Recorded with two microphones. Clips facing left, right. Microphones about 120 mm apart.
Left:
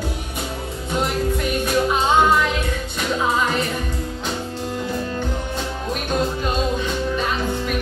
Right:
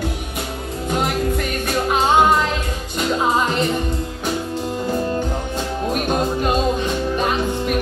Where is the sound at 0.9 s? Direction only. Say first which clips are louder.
Right 1 dB; 55° right (ahead or behind).